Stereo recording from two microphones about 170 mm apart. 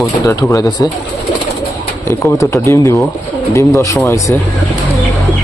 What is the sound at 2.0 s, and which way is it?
A man's voice, 20° left (ahead or behind).